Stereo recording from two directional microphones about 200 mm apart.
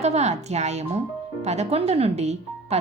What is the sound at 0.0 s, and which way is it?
Speech, 35° right (ahead or behind).